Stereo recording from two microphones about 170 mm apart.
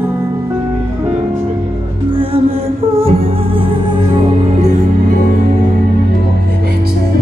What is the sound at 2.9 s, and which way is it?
Music, 35° right (ahead or behind).